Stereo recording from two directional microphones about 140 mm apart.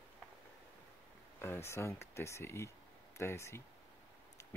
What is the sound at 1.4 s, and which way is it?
Speech, 15° left (ahead or behind).